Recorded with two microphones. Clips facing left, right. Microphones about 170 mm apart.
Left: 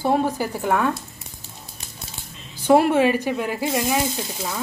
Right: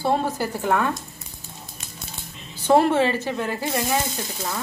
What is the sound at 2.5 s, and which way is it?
A woman's voice, 10° left (ahead or behind).